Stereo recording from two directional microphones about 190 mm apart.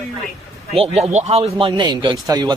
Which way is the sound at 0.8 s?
35° right (ahead or behind).